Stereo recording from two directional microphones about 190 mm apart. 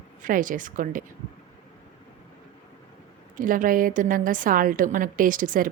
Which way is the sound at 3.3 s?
45° right (ahead or behind).